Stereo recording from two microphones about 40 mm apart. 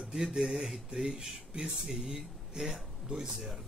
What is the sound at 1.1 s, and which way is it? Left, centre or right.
A man's voice, right.